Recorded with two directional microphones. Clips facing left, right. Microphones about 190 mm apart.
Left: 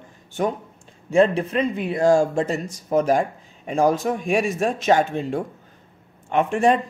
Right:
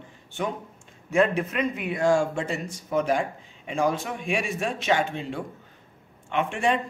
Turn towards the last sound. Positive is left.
turn(degrees=40)  # may be behind; listen again after turning